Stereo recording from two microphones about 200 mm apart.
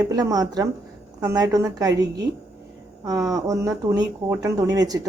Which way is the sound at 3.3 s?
15° right (ahead or behind).